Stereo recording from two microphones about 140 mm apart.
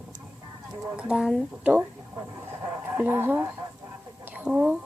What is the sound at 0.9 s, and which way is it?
Speech, 5° right (ahead or behind).